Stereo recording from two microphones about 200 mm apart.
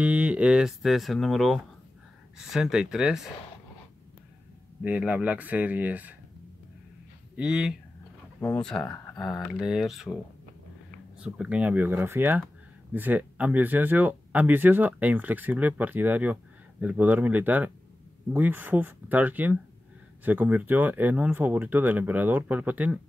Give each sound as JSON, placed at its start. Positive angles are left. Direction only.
{"t": 0.0, "sound": "speech", "side_deg": -5}
{"t": 4.8, "sound": "speech", "side_deg": -5}
{"t": 7.3, "sound": "speech", "side_deg": -5}
{"t": 8.4, "sound": "speech", "side_deg": 5}
{"t": 9.2, "sound": "speech", "side_deg": 0}